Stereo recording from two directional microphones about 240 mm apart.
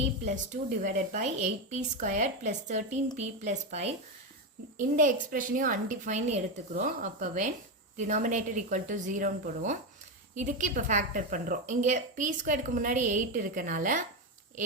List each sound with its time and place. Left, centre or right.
0.0 s a woman's voice: right